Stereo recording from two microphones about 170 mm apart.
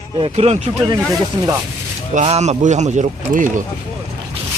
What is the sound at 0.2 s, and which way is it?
Speech, 40° right (ahead or behind).